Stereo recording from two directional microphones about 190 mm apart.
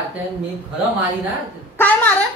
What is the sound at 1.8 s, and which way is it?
Speech, 10° left (ahead or behind).